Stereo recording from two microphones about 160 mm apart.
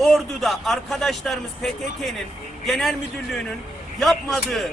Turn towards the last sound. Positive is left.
turn(degrees=0)  # may be behind; listen again after turning